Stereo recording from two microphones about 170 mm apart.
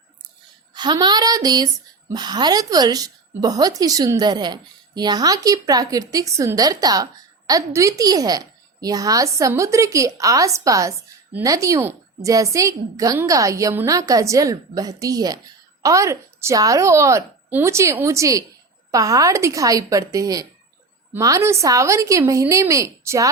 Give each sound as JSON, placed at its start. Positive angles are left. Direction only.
{"t": 0.7, "sound": "a woman's voice", "side_deg": -25}